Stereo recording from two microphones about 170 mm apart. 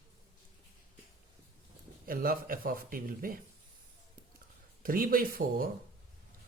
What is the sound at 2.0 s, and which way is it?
Speech, 60° right (ahead or behind).